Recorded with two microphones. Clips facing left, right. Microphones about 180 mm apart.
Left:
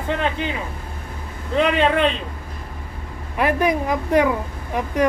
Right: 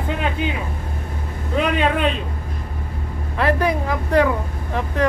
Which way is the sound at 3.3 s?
15° left (ahead or behind).